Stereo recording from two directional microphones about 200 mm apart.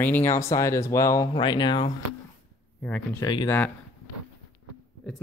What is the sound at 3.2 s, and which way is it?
Speech, 20° left (ahead or behind).